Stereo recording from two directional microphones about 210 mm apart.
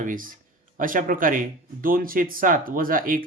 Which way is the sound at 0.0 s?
40° right (ahead or behind).